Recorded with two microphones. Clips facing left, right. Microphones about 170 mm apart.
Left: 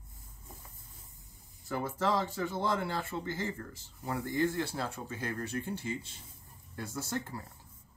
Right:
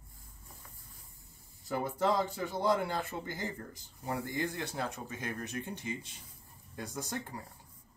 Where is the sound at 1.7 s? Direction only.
15° right (ahead or behind).